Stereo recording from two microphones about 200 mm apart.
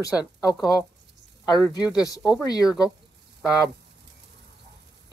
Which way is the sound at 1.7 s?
20° left (ahead or behind).